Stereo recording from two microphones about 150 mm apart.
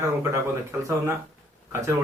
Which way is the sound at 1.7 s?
20° right (ahead or behind).